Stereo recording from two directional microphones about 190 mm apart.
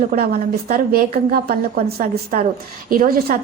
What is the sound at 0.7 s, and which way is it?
Speech, 50° right (ahead or behind).